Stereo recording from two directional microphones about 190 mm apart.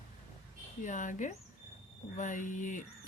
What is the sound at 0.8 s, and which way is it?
A woman's voice, 40° left (ahead or behind).